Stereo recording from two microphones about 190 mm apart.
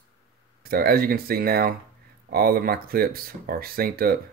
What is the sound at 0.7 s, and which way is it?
Speech, 50° right (ahead or behind).